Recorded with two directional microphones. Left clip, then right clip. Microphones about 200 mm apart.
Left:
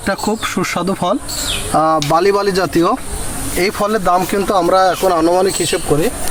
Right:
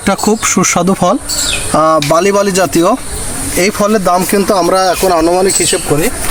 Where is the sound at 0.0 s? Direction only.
55° right (ahead or behind).